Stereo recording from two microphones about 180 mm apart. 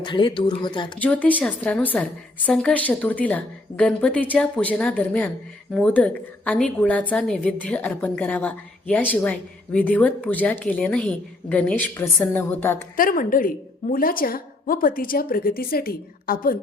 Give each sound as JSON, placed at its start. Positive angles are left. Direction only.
{"t": 0.0, "sound": "speech", "side_deg": 25}
{"t": 0.9, "sound": "a woman's voice", "side_deg": 10}
{"t": 13.0, "sound": "a woman's voice", "side_deg": 50}